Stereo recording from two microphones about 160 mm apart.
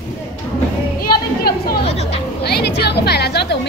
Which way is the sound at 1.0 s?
70° left (ahead or behind).